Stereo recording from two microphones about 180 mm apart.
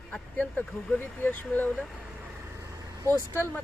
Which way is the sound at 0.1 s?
10° left (ahead or behind).